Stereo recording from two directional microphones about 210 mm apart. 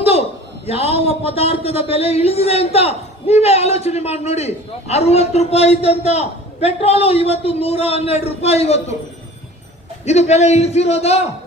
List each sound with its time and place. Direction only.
0.0 s a man's voice: 30° left (ahead or behind)
10.0 s a man's voice: 30° left (ahead or behind)